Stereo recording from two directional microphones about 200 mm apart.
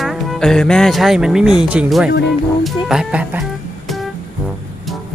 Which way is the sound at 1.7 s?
5° right (ahead or behind).